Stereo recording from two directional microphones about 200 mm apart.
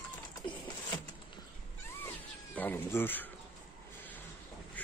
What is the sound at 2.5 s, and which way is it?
Cat, 10° left (ahead or behind).